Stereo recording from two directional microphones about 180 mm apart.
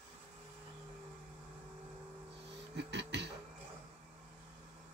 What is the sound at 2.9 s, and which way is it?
Speech, 75° right (ahead or behind).